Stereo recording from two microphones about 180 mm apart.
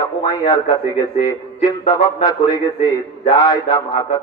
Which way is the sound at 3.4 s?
20° left (ahead or behind).